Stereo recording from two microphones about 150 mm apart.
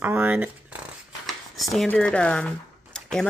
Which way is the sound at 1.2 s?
Centre (ahead or behind).